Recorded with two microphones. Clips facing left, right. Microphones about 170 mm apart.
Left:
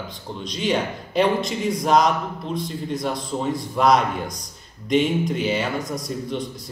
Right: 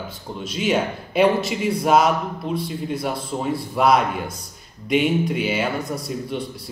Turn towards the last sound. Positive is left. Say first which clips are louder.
# even
turn(degrees=-5)  # may be behind; listen again after turning